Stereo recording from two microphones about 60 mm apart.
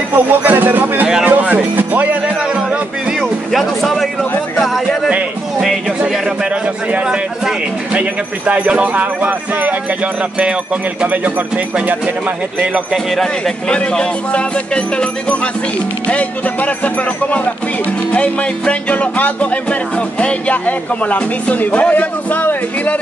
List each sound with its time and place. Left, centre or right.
0.1 s speech: right
1.2 s music: right
3.2 s music: centre
6.9 s speech: centre
11.0 s speech: right
12.9 s a man's voice: centre
13.7 s music: centre